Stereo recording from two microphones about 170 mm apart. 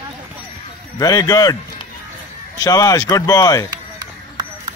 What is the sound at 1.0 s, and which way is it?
Speech, 20° left (ahead or behind).